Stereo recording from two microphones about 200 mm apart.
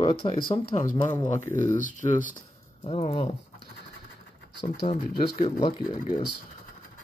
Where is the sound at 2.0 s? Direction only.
25° left (ahead or behind).